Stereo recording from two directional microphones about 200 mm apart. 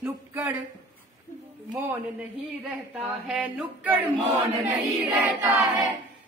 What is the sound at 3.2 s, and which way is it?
A man's voice, 5° right (ahead or behind).